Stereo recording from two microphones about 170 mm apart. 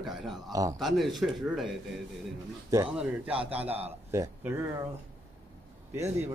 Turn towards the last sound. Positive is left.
turn(degrees=-15)  # may be behind; listen again after turning